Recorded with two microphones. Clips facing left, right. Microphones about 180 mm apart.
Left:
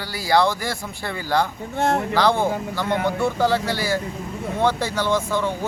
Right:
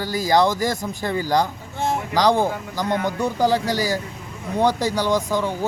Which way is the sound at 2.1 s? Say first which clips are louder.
Right 1 dB; 15° right (ahead or behind).